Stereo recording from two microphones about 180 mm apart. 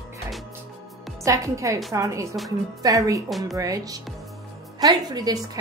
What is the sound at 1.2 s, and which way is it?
A woman's voice, 20° right (ahead or behind).